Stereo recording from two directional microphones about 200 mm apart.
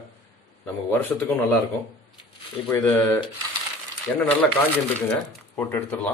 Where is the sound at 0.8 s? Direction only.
10° left (ahead or behind).